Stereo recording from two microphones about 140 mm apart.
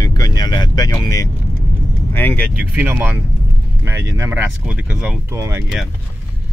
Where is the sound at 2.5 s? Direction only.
10° right (ahead or behind).